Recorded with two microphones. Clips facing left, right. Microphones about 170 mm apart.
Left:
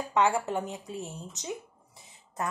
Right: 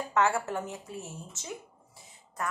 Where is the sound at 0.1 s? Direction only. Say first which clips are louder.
Left 2 dB; 15° left (ahead or behind).